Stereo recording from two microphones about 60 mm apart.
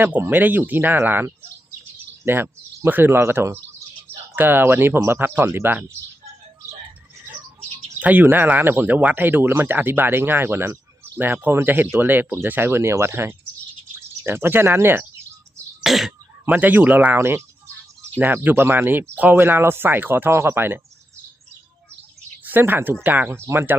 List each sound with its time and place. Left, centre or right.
0.3 s speech: right
7.9 s speech: right
15.8 s throat clearing: centre
16.5 s speech: right
17.2 s speech: right
18.5 s speech: right
22.4 s speech: right
23.3 s speech: right